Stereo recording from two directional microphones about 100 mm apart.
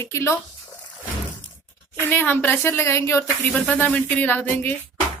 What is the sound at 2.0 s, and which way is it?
A woman's voice, 20° left (ahead or behind).